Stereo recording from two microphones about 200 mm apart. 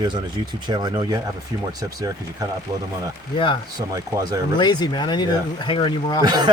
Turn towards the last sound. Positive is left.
turn(degrees=-20)  # may be behind; listen again after turning